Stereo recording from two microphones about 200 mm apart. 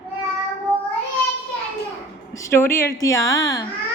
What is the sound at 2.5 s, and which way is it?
A woman's voice, 10° left (ahead or behind).